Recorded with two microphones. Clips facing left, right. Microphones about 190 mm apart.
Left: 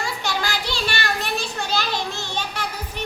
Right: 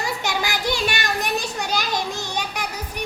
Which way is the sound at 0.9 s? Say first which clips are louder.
Right 1 dB; 15° right (ahead or behind).